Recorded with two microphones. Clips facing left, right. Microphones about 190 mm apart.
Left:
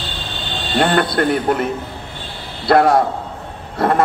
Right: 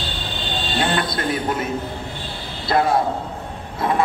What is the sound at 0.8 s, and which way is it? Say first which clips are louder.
Speech: left 7 dB; 60° left (ahead or behind).